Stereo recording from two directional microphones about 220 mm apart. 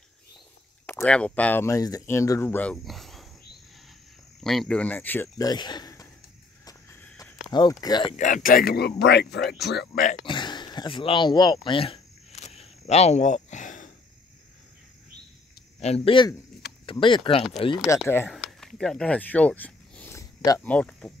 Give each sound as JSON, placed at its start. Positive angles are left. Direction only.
{"t": 0.8, "sound": "speech", "side_deg": 5}
{"t": 4.4, "sound": "speech", "side_deg": 0}
{"t": 6.6, "sound": "a sound", "side_deg": 15}
{"t": 7.5, "sound": "speech", "side_deg": 20}
{"t": 8.2, "sound": "speech", "side_deg": 35}
{"t": 10.2, "sound": "a sound", "side_deg": 20}
{"t": 15.8, "sound": "speech", "side_deg": 25}
{"t": 17.8, "sound": "speech", "side_deg": 10}